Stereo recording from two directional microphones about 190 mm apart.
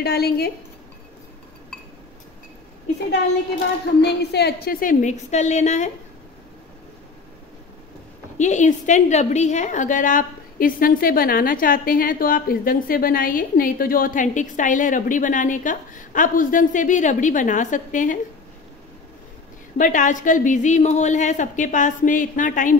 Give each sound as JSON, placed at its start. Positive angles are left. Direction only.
{"t": 0.0, "sound": "speech", "side_deg": 55}
{"t": 4.0, "sound": "a woman's voice", "side_deg": 60}
{"t": 8.4, "sound": "a woman's voice", "side_deg": 40}
{"t": 19.8, "sound": "a woman's voice", "side_deg": 40}